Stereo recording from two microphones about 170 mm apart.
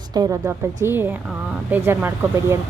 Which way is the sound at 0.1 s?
20° right (ahead or behind).